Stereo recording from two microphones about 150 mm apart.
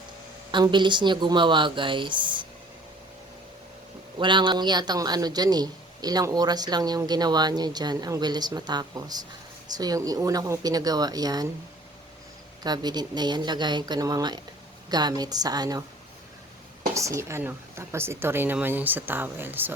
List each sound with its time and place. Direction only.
0.5 s speech: 30° right (ahead or behind)
4.2 s a man's voice: 30° right (ahead or behind)
12.6 s a man's voice: 25° right (ahead or behind)
16.9 s speech: 20° right (ahead or behind)